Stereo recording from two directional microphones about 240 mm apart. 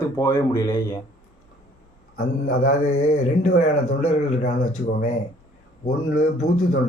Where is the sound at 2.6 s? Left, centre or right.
Left.